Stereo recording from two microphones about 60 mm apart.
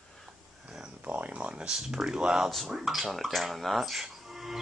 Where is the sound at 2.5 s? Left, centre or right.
Centre.